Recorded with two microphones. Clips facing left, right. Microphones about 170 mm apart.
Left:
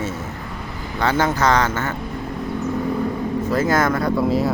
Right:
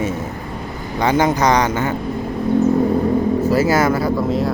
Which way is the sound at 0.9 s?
15° right (ahead or behind).